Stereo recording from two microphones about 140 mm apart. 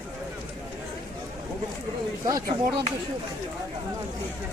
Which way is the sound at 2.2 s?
25° right (ahead or behind).